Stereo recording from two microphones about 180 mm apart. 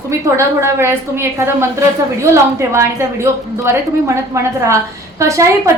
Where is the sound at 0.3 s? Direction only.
15° right (ahead or behind).